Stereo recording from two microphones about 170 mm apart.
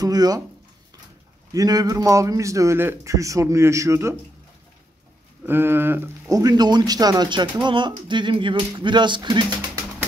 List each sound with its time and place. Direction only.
0.0 s speech: 20° right (ahead or behind)
1.5 s speech: 20° right (ahead or behind)
5.4 s speech: 10° right (ahead or behind)